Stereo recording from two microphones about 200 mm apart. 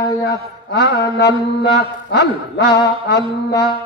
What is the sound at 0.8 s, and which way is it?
A man's voice, 55° left (ahead or behind).